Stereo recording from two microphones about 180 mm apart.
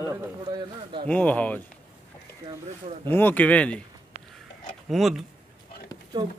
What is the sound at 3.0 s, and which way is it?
Speech, 10° left (ahead or behind).